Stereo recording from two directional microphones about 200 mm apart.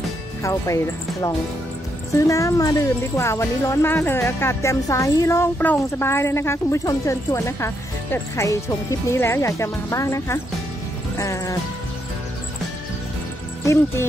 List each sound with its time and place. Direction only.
0.4 s speech: 15° left (ahead or behind)